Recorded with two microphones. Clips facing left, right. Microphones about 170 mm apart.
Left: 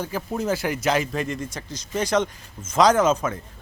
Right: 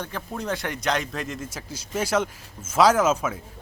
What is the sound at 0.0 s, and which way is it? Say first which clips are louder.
Speech: left 5 dB; 5° left (ahead or behind).